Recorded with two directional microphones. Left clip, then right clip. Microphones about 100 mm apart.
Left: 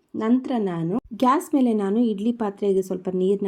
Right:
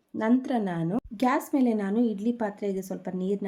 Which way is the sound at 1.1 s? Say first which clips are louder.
Left 6 dB; 35° left (ahead or behind).